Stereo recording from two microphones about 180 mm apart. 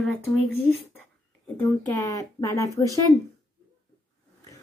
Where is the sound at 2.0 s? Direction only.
20° left (ahead or behind).